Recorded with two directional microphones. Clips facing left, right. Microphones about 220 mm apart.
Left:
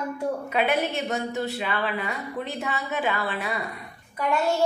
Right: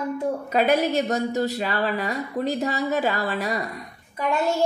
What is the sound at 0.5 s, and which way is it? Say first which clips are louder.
A woman's voice: right 6 dB; 40° right (ahead or behind).